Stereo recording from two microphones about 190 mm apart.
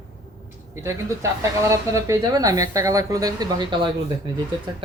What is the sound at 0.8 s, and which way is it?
Speech, 15° right (ahead or behind).